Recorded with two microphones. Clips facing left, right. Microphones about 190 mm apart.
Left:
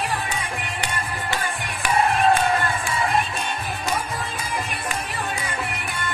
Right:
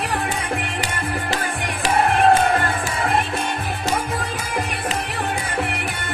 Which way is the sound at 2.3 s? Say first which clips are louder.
Right 3 dB; 50° right (ahead or behind).